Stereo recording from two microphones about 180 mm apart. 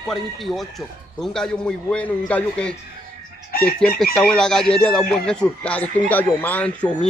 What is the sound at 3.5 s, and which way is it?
Chicken, 55° left (ahead or behind).